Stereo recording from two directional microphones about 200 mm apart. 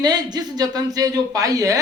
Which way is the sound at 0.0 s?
20° right (ahead or behind).